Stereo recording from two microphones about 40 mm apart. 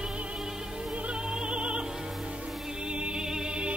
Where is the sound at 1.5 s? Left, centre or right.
Right.